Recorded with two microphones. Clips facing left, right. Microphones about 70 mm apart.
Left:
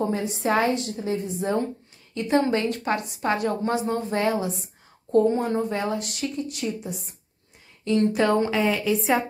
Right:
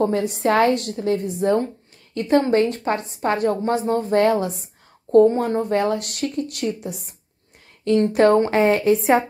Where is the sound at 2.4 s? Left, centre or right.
Right.